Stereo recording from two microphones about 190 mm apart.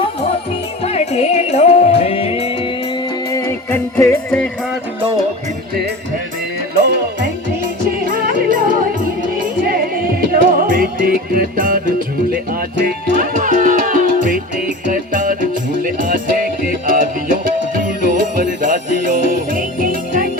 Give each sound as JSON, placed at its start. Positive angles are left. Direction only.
{"t": 0.9, "sound": "music", "side_deg": 35}
{"t": 3.3, "sound": "music", "side_deg": 15}
{"t": 6.7, "sound": "music", "side_deg": -60}
{"t": 7.9, "sound": "music", "side_deg": -45}
{"t": 10.3, "sound": "music", "side_deg": -50}
{"t": 18.6, "sound": "jingle bell", "side_deg": -45}